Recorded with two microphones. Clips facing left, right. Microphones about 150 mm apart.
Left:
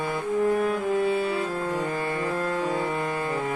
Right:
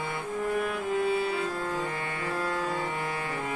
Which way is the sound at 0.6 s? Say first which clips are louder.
Left 5 dB; 40° left (ahead or behind).